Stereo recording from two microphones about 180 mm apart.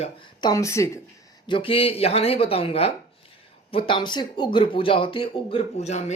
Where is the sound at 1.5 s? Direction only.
30° left (ahead or behind).